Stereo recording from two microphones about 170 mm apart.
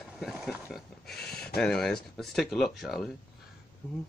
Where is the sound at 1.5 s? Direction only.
5° left (ahead or behind).